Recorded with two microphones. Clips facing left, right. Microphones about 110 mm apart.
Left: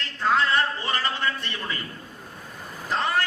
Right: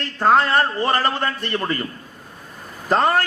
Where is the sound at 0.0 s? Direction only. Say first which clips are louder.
Right 7 dB; 50° right (ahead or behind).